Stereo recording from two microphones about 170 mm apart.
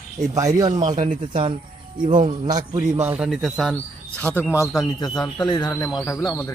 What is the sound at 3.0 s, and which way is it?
Speech, 10° right (ahead or behind).